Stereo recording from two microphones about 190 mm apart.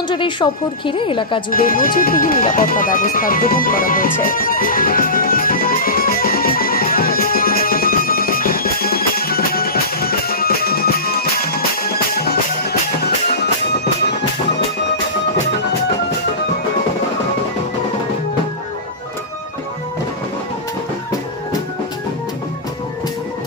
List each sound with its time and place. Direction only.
0.1 s a woman's voice: 25° left (ahead or behind)
1.5 s music: 50° left (ahead or behind)